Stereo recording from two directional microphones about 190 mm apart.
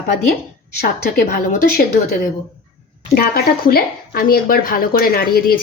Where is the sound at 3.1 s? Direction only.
50° left (ahead or behind).